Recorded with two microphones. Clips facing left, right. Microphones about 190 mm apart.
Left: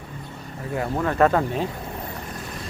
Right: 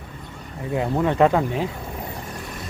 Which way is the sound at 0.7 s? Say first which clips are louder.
Right 3 dB; 15° right (ahead or behind).